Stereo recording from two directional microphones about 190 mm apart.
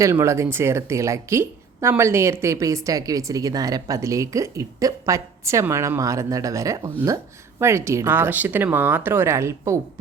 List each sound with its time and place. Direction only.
0.0 s a woman's voice: 15° right (ahead or behind)